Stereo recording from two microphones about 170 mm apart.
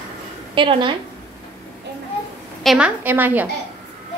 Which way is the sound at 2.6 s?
5° right (ahead or behind).